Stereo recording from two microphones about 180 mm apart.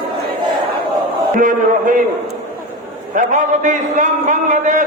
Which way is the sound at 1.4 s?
45° right (ahead or behind).